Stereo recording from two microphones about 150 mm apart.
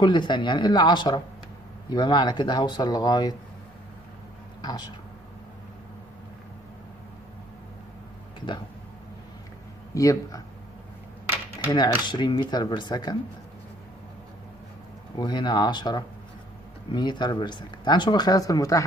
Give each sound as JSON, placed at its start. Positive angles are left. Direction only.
{"t": 0.0, "sound": "speech", "side_deg": 30}
{"t": 4.6, "sound": "speech", "side_deg": 25}
{"t": 9.9, "sound": "speech", "side_deg": 20}
{"t": 11.7, "sound": "speech", "side_deg": 30}
{"t": 15.1, "sound": "speech", "side_deg": 30}